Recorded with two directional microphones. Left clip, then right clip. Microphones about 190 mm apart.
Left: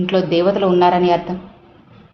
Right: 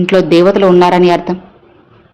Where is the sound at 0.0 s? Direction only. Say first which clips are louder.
Right 7 dB; 30° right (ahead or behind).